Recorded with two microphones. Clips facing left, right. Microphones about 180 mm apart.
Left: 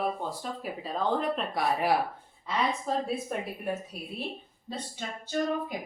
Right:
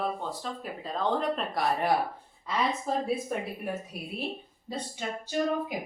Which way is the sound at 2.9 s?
5° right (ahead or behind).